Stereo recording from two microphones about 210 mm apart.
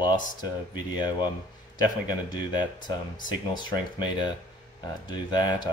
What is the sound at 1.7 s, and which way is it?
Speech, 20° left (ahead or behind).